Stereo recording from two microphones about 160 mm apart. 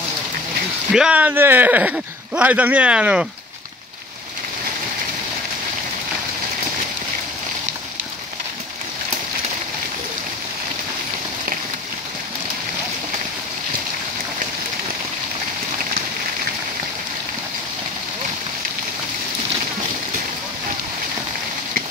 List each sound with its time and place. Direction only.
0.9 s speech: 5° right (ahead or behind)